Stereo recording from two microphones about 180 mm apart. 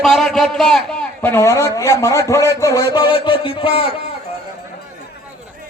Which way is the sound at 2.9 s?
25° left (ahead or behind).